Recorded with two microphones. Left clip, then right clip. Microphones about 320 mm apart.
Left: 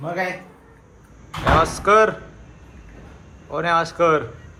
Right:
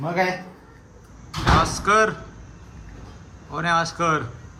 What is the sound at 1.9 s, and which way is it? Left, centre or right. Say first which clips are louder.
Speech: left 4 dB; centre.